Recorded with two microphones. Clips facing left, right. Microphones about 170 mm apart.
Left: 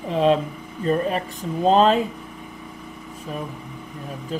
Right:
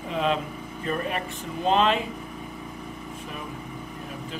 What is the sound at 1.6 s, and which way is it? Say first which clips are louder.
Speech: left 6 dB; 40° left (ahead or behind).